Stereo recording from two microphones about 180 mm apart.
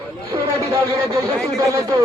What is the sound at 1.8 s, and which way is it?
Speech, 20° right (ahead or behind).